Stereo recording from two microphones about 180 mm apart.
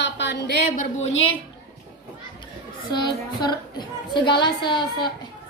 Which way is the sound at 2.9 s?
25° left (ahead or behind).